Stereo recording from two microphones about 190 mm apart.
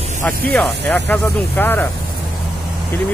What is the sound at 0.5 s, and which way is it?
Speech, 5° left (ahead or behind).